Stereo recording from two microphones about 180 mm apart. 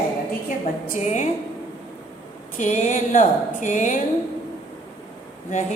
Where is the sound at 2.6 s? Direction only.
45° left (ahead or behind).